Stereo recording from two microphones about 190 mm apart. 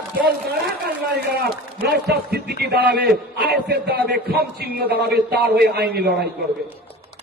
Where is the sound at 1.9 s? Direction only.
60° right (ahead or behind).